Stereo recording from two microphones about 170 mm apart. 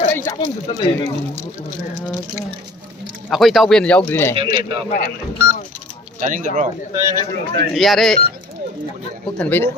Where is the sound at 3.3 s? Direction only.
Centre (ahead or behind).